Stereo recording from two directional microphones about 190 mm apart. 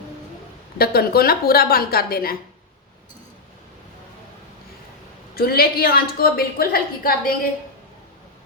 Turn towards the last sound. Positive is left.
turn(degrees=50)  # may be behind; listen again after turning